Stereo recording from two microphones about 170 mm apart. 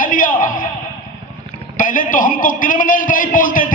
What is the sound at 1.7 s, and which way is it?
A man's voice, 50° left (ahead or behind).